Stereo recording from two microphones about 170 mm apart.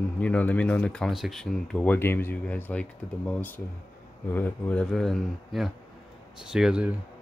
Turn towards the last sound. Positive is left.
turn(degrees=-5)  # may be behind; listen again after turning